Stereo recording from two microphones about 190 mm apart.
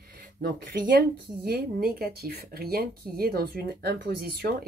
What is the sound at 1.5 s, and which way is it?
Speech, 55° right (ahead or behind).